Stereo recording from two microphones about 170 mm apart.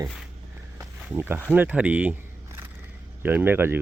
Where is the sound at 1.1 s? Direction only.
10° right (ahead or behind).